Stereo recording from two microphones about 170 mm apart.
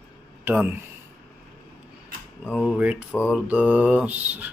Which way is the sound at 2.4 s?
5° left (ahead or behind).